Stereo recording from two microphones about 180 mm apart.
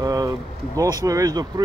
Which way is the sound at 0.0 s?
20° right (ahead or behind).